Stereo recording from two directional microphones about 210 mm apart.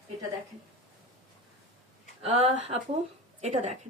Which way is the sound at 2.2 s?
30° right (ahead or behind).